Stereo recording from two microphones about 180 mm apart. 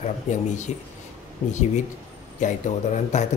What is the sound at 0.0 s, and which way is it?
Speech, 40° left (ahead or behind).